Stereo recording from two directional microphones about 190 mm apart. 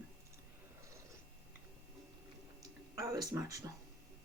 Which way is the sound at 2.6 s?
20° right (ahead or behind).